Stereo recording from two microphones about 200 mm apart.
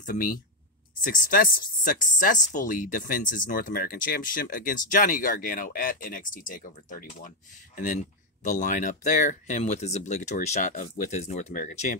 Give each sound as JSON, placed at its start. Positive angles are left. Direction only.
{"t": 0.0, "sound": "speech", "side_deg": 45}